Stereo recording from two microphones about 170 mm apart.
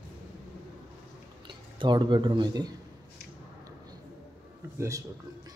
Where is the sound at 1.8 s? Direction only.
25° right (ahead or behind).